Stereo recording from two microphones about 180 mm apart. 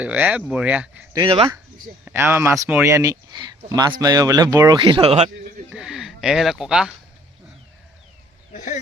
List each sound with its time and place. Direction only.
0.0 s speech: 10° right (ahead or behind)
1.1 s speech: 30° right (ahead or behind)
2.0 s speech: 15° right (ahead or behind); by 5.3 s 35° right (ahead or behind)
5.7 s speech: 5° right (ahead or behind)
8.5 s speech: 45° left (ahead or behind)